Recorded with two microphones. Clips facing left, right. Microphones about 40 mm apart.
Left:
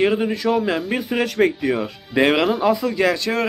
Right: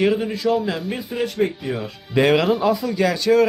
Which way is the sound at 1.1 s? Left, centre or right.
Left.